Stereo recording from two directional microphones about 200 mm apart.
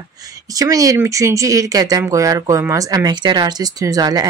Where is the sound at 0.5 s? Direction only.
15° right (ahead or behind).